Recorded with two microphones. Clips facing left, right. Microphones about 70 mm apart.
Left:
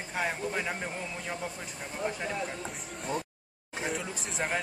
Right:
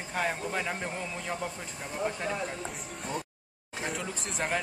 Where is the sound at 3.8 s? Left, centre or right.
Centre.